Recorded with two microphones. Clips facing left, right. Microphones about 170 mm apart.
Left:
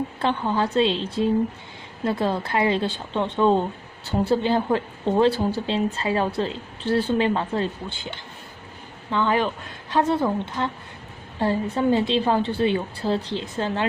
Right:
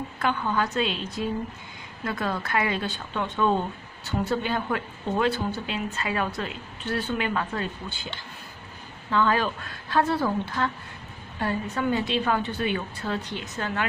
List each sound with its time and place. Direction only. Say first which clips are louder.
0.2 s speech: left 2 dB; 30° left (ahead or behind)
9.1 s speech: left 1 dB; 20° left (ahead or behind)